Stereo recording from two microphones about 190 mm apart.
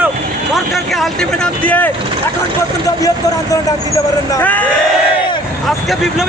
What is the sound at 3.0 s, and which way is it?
Speech, 20° left (ahead or behind).